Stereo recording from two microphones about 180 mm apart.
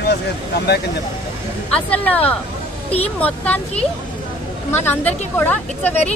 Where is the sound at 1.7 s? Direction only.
10° left (ahead or behind).